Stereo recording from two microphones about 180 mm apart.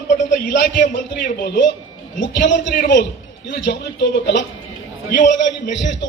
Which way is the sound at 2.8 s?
55° left (ahead or behind).